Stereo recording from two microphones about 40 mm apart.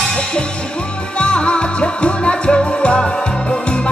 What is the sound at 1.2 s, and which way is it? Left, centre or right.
Music, left.